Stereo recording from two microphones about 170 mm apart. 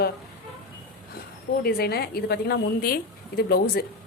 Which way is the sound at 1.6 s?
65° left (ahead or behind).